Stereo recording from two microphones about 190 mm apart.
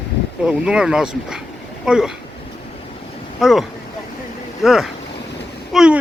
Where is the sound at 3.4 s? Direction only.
Centre (ahead or behind).